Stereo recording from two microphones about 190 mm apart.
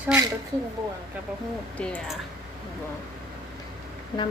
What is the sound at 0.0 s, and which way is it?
Speech, 10° right (ahead or behind).